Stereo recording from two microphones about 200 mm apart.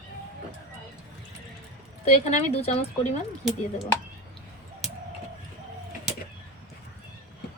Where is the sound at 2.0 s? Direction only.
30° left (ahead or behind).